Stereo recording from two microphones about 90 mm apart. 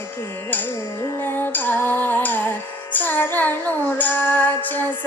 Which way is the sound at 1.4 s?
20° left (ahead or behind).